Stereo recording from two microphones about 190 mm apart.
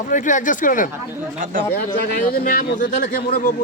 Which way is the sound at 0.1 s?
40° left (ahead or behind).